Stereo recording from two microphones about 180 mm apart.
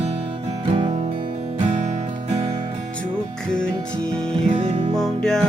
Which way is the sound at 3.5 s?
5° left (ahead or behind).